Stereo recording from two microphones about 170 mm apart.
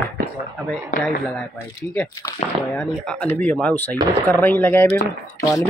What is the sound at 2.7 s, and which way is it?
Speech, 5° left (ahead or behind).